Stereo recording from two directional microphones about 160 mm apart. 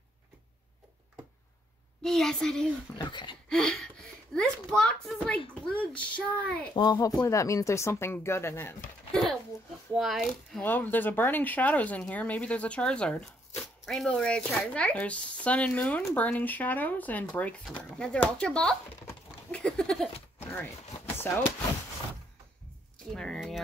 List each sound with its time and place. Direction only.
2.0 s speech: 5° left (ahead or behind)
3.0 s a sound: 30° left (ahead or behind)
3.4 s speech: 5° left (ahead or behind)
6.7 s speech: 25° left (ahead or behind)
9.9 s speech: centre (ahead or behind)
10.6 s speech: 10° left (ahead or behind)
20.1 s a sound: 40° left (ahead or behind)
21.3 s speech: 10° left (ahead or behind)
23.1 s speech: 5° left (ahead or behind)